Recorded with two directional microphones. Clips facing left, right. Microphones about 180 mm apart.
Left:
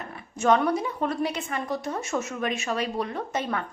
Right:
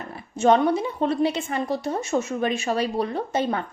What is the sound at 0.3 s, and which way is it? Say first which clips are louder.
A woman's voice: right 3 dB; 30° right (ahead or behind).